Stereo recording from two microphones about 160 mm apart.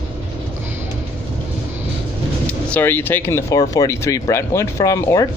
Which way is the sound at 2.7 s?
10° left (ahead or behind).